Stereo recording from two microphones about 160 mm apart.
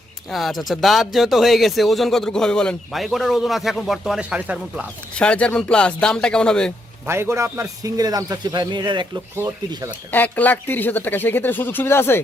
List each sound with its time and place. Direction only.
0.3 s speech: centre (ahead or behind)
5.1 s speech: 5° left (ahead or behind)
7.1 s a man's voice: 15° right (ahead or behind)
9.3 s speech: 15° right (ahead or behind)
10.1 s speech: 10° left (ahead or behind)